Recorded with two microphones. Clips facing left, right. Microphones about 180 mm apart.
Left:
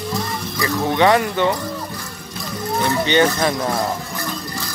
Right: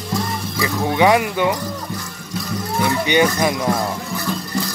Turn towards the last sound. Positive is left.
turn(degrees=-10)  # may be behind; listen again after turning